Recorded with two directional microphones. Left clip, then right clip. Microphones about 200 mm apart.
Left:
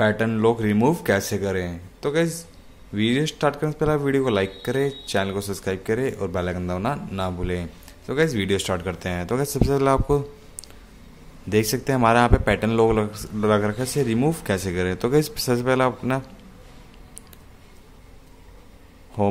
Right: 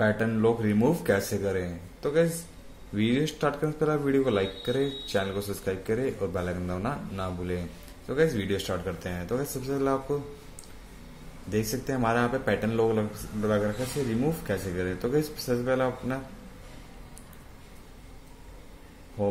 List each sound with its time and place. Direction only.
0.0 s speech: 25° left (ahead or behind)
11.4 s speech: 35° left (ahead or behind)